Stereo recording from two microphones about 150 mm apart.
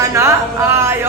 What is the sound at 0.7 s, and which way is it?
Speech, 15° right (ahead or behind).